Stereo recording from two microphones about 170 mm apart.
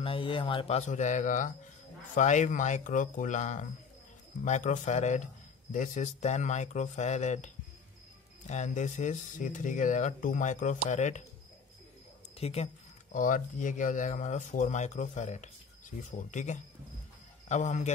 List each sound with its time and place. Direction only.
0.0 s speech: 30° left (ahead or behind)
12.4 s speech: 35° left (ahead or behind)
13.1 s speech: 50° left (ahead or behind)